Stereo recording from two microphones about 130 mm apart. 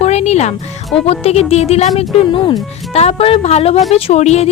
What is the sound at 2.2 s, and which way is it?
Speech, 45° left (ahead or behind).